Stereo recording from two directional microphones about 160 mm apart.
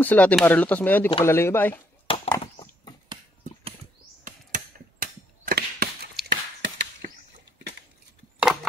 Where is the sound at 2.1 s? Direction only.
30° left (ahead or behind).